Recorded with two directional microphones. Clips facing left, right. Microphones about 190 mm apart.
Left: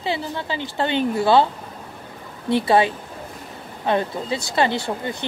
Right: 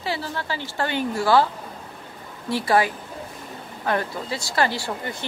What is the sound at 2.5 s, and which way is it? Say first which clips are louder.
Speech: left 3 dB; 25° left (ahead or behind).